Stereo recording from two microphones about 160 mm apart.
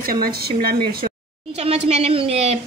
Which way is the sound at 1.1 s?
40° right (ahead or behind).